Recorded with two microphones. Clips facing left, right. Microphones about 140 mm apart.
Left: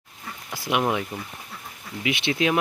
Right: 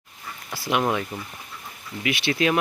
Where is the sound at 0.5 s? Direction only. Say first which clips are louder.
Even; 15° left (ahead or behind).